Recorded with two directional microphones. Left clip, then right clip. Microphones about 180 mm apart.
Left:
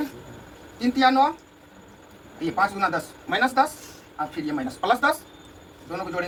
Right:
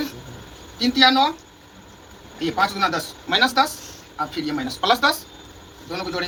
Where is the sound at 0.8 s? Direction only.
Centre (ahead or behind).